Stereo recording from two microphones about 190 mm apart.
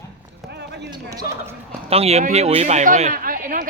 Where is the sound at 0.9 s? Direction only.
20° right (ahead or behind).